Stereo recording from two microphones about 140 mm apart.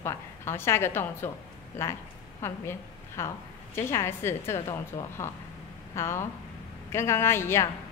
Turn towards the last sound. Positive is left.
turn(degrees=20)  # may be behind; listen again after turning